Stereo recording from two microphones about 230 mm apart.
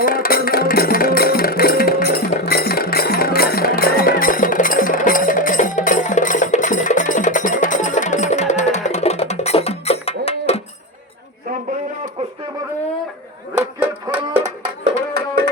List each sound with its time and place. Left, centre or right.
0.0 s music: left
13.6 s music: centre